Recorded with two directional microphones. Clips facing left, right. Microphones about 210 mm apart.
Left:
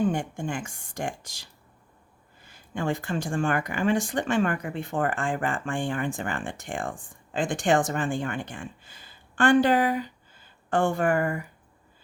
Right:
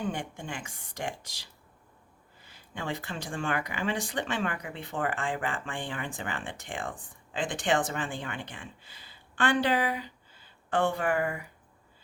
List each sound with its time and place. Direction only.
0.1 s speech: 45° left (ahead or behind)